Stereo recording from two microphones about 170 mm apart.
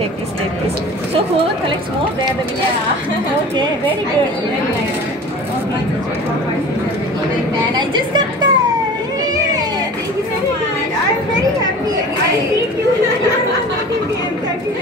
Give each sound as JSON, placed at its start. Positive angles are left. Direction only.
{"t": 7.7, "sound": "speech", "side_deg": -25}